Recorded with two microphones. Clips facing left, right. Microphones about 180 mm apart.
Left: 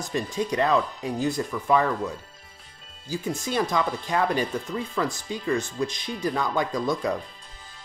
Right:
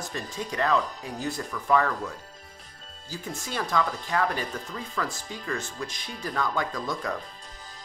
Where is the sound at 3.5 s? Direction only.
15° left (ahead or behind).